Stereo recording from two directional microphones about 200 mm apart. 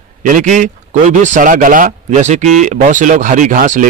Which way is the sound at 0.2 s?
40° right (ahead or behind).